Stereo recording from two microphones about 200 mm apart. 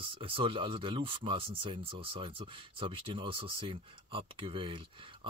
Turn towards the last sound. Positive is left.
turn(degrees=-25)  # may be behind; listen again after turning